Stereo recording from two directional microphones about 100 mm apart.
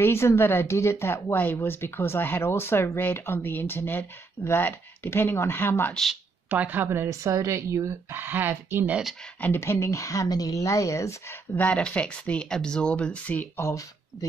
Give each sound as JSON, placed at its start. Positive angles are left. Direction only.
{"t": 0.0, "sound": "speech", "side_deg": 25}
{"t": 6.5, "sound": "speech", "side_deg": -20}
{"t": 9.2, "sound": "speech", "side_deg": 20}
{"t": 11.5, "sound": "speech", "side_deg": 15}
{"t": 13.6, "sound": "speech", "side_deg": 30}